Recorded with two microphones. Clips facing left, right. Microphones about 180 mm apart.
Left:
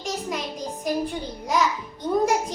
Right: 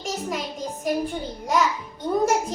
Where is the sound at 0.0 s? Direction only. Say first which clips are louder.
Right 1 dB; 5° right (ahead or behind).